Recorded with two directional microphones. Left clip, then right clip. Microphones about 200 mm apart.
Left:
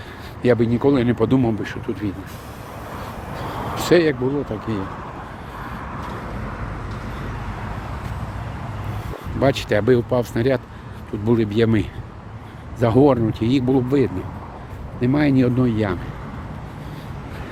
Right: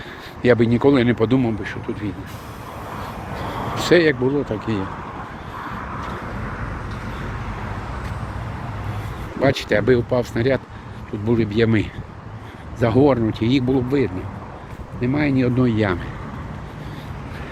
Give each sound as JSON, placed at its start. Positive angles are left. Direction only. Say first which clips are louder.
{"t": 0.4, "sound": "speech", "louder": "right 2 dB", "side_deg": 5}
{"t": 1.3, "sound": "speech", "louder": "left 1 dB", "side_deg": 15}
{"t": 1.6, "sound": "speech", "louder": "even", "side_deg": 30}
{"t": 3.8, "sound": "speech", "louder": "right 1 dB", "side_deg": 10}
{"t": 9.4, "sound": "speech", "louder": "even", "side_deg": 10}
{"t": 15.5, "sound": "speech", "louder": "right 2 dB", "side_deg": 5}